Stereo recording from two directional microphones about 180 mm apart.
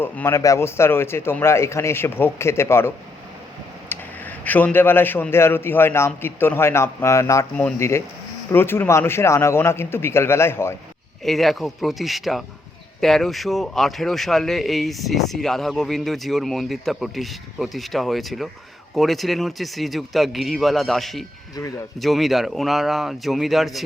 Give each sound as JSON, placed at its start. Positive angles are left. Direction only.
{"t": 0.0, "sound": "a man's voice", "side_deg": 15}
{"t": 11.2, "sound": "speech", "side_deg": 0}